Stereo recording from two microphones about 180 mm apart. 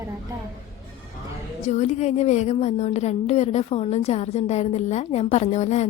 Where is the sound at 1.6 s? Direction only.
40° left (ahead or behind).